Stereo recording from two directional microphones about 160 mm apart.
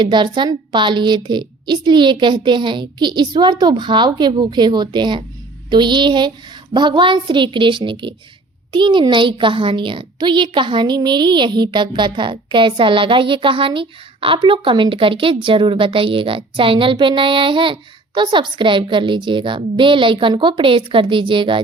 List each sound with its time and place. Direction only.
0.0 s a woman's voice: 30° right (ahead or behind)